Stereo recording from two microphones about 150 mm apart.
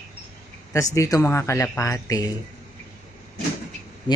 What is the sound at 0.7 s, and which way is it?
Speech, 20° left (ahead or behind).